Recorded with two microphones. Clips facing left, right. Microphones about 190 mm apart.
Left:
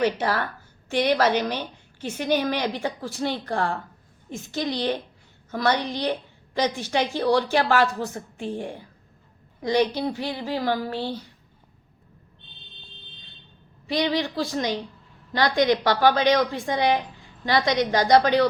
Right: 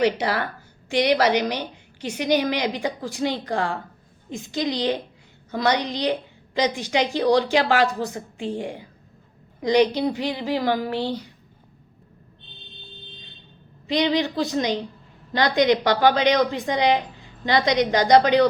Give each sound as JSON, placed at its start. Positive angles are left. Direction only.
{"t": 0.0, "sound": "a woman's voice", "side_deg": -10}
{"t": 13.8, "sound": "a woman's voice", "side_deg": -20}